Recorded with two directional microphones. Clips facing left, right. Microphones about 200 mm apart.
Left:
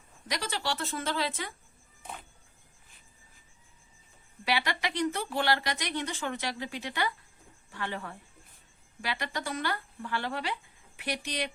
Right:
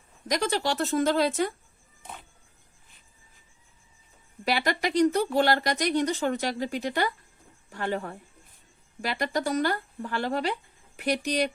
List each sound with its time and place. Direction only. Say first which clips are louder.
0.3 s speech: right 7 dB; 45° right (ahead or behind)
4.4 s speech: right 5 dB; 45° right (ahead or behind)